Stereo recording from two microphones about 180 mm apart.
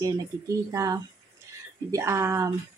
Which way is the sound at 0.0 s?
15° right (ahead or behind).